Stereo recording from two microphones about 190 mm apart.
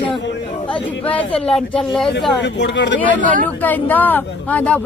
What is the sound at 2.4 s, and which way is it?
Speech, 65° left (ahead or behind).